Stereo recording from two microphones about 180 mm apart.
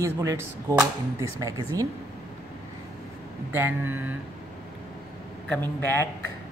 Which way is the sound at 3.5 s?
10° right (ahead or behind).